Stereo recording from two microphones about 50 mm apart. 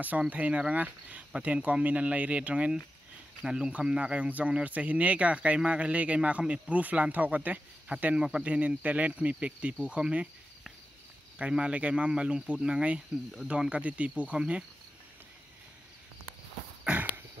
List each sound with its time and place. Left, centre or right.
0.3 s speech: right
3.4 s speech: centre; by 7.6 s right
8.2 s speech: centre
8.5 s speech: right
11.3 s speech: right
16.9 s a sound: right